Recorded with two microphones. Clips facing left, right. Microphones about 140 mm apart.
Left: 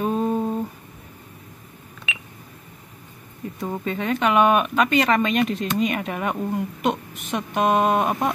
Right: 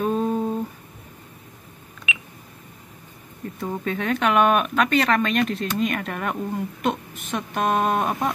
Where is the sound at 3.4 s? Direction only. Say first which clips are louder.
Even; 5° left (ahead or behind).